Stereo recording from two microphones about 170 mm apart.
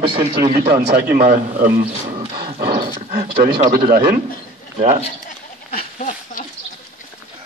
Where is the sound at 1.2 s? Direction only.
45° right (ahead or behind).